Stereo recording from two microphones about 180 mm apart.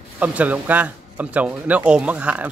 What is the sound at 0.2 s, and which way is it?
Speech, 10° right (ahead or behind).